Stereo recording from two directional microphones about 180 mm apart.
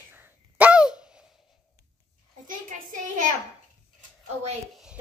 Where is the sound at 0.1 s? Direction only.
10° right (ahead or behind).